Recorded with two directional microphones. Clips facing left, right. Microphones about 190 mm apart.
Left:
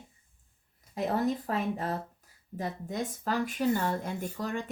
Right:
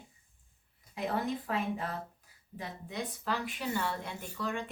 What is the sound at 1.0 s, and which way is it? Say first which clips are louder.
Speech: left 5 dB; 40° left (ahead or behind).